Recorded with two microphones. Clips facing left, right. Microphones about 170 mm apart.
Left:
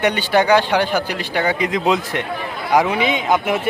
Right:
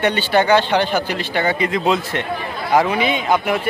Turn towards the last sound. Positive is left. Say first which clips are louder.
# even
turn(degrees=20)  # may be behind; listen again after turning